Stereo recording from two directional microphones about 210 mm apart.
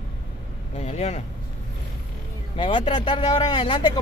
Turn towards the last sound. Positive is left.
turn(degrees=25)  # may be behind; listen again after turning